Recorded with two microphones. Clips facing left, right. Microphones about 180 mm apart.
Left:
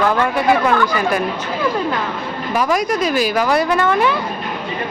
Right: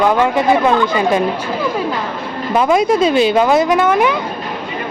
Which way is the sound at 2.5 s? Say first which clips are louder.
Right 5 dB; 25° right (ahead or behind).